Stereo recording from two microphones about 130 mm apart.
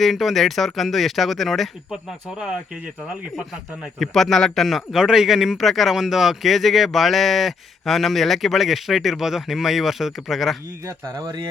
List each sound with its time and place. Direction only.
0.0 s a man's voice: centre (ahead or behind)
11.1 s speech: 30° right (ahead or behind)